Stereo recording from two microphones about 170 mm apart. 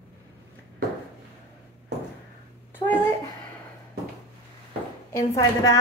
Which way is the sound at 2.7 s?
10° left (ahead or behind).